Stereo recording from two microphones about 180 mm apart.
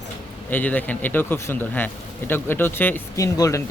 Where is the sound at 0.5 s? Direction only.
10° left (ahead or behind).